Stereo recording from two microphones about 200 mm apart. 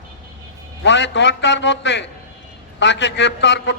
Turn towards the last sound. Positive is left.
turn(degrees=60)  # may be behind; listen again after turning